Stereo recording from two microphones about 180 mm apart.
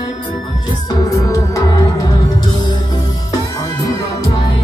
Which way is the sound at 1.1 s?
15° left (ahead or behind).